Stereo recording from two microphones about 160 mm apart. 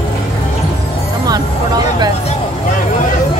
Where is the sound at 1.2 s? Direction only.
25° right (ahead or behind).